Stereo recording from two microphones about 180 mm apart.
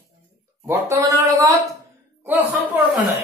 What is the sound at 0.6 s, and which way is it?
Speech, 15° right (ahead or behind).